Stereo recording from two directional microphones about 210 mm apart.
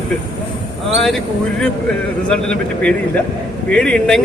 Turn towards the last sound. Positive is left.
turn(degrees=5)  # may be behind; listen again after turning